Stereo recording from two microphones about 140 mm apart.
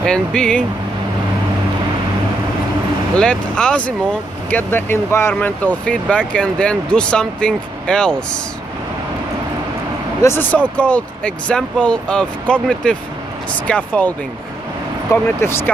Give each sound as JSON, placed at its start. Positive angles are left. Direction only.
{"t": 0.0, "sound": "speech", "side_deg": 5}
{"t": 3.2, "sound": "speech", "side_deg": 5}
{"t": 10.2, "sound": "speech", "side_deg": 15}
{"t": 15.4, "sound": "speech", "side_deg": 15}